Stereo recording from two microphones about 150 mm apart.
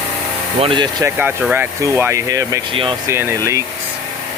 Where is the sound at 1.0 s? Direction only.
10° right (ahead or behind).